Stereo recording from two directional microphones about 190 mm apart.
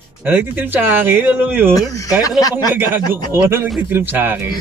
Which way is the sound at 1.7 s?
15° left (ahead or behind).